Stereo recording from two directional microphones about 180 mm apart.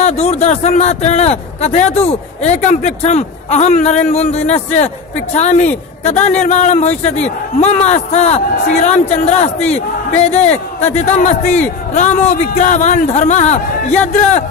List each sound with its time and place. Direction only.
0.0 s speech: 35° left (ahead or behind)